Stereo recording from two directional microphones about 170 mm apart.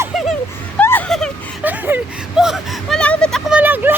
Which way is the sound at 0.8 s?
10° left (ahead or behind).